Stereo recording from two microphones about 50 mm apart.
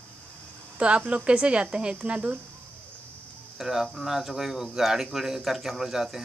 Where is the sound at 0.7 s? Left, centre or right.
Right.